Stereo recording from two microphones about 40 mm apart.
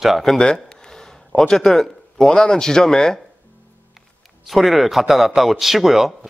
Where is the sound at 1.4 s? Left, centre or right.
Centre.